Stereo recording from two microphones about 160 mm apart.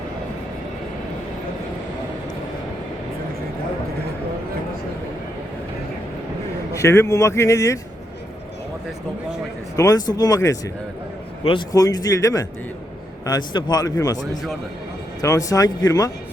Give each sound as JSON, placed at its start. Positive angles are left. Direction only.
{"t": 6.7, "sound": "speech", "side_deg": 15}
{"t": 9.7, "sound": "speech", "side_deg": 20}
{"t": 15.2, "sound": "speech", "side_deg": 20}